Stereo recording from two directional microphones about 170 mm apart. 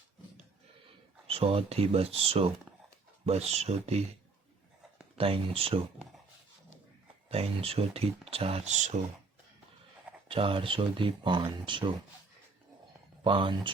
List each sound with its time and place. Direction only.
1.3 s speech: 35° right (ahead or behind)
5.1 s speech: 35° right (ahead or behind)
7.3 s speech: 35° right (ahead or behind)
10.2 s speech: 30° right (ahead or behind)
13.2 s speech: 30° right (ahead or behind)